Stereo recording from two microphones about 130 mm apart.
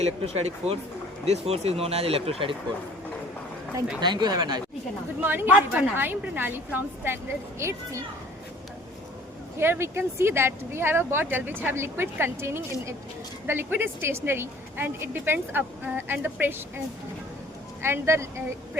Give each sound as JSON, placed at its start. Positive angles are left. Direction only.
{"t": 0.0, "sound": "speech", "side_deg": -55}
{"t": 4.0, "sound": "speech", "side_deg": -35}
{"t": 5.2, "sound": "a woman's voice", "side_deg": -15}
{"t": 9.6, "sound": "a woman's voice", "side_deg": -20}
{"t": 17.8, "sound": "speech", "side_deg": -20}